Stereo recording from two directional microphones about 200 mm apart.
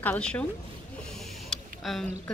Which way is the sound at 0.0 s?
5° left (ahead or behind).